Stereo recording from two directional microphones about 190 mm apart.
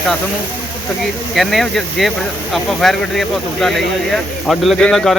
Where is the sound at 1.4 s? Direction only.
Centre (ahead or behind).